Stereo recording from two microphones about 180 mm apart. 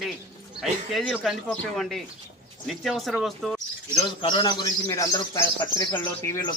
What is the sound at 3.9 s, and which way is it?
Speech, 25° left (ahead or behind).